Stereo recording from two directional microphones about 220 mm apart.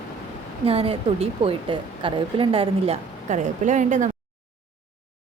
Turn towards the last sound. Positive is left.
turn(degrees=-35)  # may be behind; listen again after turning